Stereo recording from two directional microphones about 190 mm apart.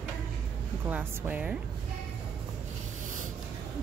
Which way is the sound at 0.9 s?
10° right (ahead or behind).